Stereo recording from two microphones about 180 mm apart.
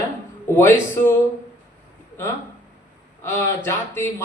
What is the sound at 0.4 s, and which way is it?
Speech, 15° left (ahead or behind).